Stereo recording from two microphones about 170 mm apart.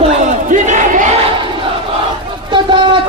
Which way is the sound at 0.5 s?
45° right (ahead or behind).